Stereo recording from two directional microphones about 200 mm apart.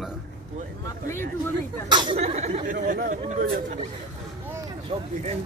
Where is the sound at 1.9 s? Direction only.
25° right (ahead or behind); by 3.2 s 40° right (ahead or behind).